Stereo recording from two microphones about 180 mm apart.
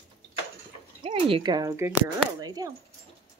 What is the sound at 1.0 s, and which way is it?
Speech, 25° right (ahead or behind).